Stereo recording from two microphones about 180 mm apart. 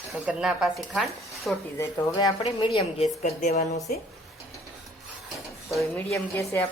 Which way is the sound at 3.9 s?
55° left (ahead or behind).